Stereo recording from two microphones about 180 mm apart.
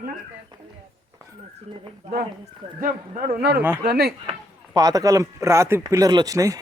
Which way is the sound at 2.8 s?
50° right (ahead or behind).